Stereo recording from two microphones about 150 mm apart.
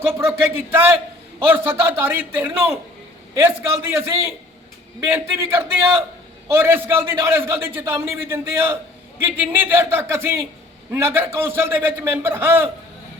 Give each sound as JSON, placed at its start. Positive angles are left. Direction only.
{"t": 0.0, "sound": "a man's voice", "side_deg": -15}